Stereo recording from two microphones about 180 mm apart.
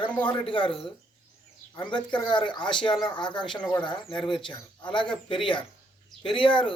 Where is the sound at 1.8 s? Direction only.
25° left (ahead or behind).